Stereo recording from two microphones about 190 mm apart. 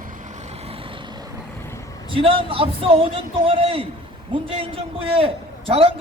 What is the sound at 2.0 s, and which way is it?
A man's voice, 30° right (ahead or behind).